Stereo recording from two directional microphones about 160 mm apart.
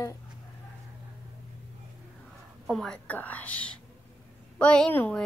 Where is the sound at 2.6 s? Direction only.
Centre (ahead or behind).